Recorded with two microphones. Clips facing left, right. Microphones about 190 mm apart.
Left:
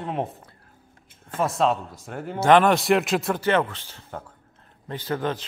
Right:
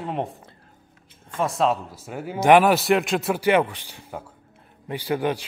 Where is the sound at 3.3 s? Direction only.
10° right (ahead or behind).